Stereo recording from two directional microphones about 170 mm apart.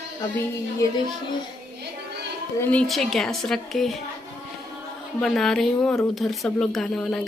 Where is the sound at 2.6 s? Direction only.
5° left (ahead or behind).